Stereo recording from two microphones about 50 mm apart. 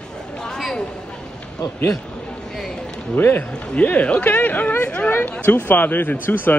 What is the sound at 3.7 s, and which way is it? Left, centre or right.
Speech, left.